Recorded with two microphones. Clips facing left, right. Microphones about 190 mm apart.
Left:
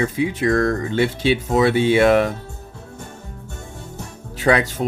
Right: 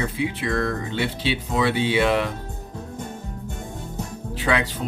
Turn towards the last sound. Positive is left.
turn(degrees=45)  # may be behind; listen again after turning